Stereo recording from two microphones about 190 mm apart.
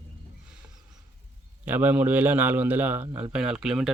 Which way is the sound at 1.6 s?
10° right (ahead or behind).